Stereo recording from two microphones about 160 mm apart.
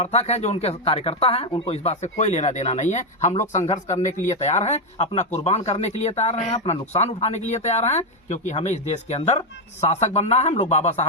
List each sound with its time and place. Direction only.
0.0 s speech: 40° left (ahead or behind)